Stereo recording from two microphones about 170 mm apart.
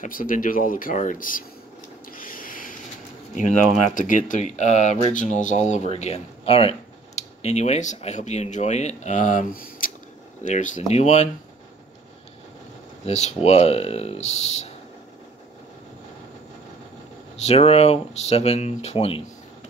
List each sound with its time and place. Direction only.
0.0 s speech: 55° left (ahead or behind)
2.0 s a sound: 55° left (ahead or behind)
3.9 s speech: 50° left (ahead or behind)
13.0 s speech: 40° left (ahead or behind)
17.5 s speech: 35° left (ahead or behind)